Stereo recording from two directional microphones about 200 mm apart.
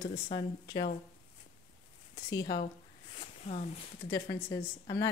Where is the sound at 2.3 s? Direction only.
20° left (ahead or behind).